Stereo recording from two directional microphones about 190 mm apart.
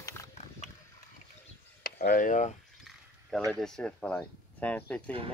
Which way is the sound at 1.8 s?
50° left (ahead or behind).